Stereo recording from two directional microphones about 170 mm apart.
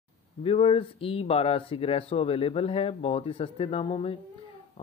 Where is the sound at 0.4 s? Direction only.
35° left (ahead or behind).